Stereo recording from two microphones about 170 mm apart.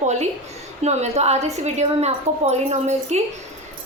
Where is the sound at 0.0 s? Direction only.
45° right (ahead or behind).